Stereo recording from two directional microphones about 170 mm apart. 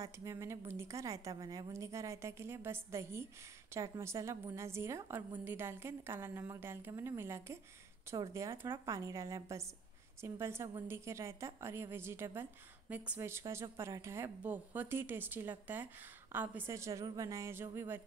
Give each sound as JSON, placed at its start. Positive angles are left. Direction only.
{"t": 0.0, "sound": "a woman's voice", "side_deg": -15}